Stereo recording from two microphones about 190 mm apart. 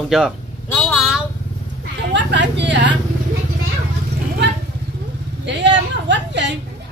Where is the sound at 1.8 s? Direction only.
65° right (ahead or behind).